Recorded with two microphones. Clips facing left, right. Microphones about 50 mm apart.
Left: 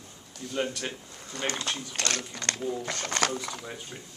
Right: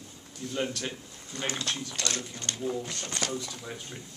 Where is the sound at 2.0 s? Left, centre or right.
Left.